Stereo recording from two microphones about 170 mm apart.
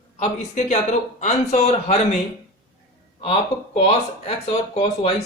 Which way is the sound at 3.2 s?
35° left (ahead or behind).